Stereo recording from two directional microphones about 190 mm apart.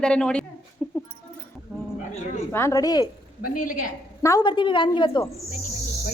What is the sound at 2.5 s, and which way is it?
Speech, 15° left (ahead or behind).